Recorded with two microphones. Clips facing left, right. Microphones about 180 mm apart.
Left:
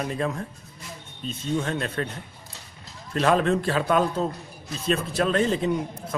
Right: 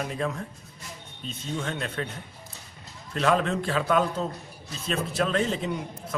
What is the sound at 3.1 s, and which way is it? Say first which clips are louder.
Speech: left 3 dB; 35° left (ahead or behind).